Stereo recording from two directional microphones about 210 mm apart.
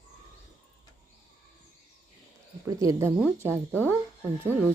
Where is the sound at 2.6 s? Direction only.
15° right (ahead or behind).